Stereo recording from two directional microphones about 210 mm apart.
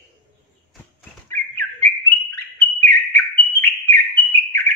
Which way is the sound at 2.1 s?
10° left (ahead or behind).